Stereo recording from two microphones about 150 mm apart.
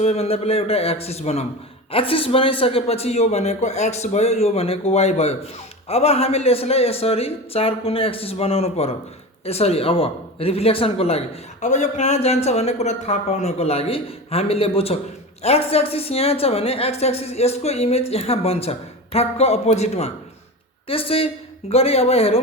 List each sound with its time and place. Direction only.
0.0 s a woman's voice: 45° left (ahead or behind)
11.6 s a woman's voice: 50° left (ahead or behind)